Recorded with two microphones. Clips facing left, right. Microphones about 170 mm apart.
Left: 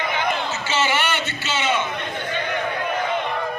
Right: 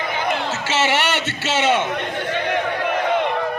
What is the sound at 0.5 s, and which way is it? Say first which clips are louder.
A man's voice: right 2 dB; 75° right (ahead or behind).